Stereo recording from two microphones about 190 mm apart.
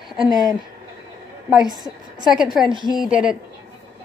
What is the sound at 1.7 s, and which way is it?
Speech, 20° right (ahead or behind).